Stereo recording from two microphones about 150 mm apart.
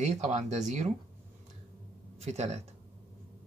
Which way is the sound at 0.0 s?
50° right (ahead or behind).